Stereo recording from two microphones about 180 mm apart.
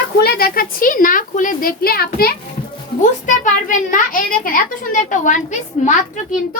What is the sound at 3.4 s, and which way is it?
A child's voice, 50° left (ahead or behind).